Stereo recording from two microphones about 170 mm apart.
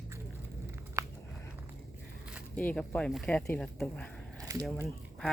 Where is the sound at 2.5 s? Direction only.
10° left (ahead or behind).